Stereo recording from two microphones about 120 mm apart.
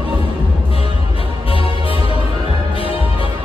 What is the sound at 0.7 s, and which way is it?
Music, 50° left (ahead or behind).